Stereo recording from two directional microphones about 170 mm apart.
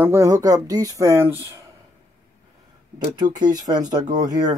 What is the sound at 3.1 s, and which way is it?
Speech, 25° right (ahead or behind).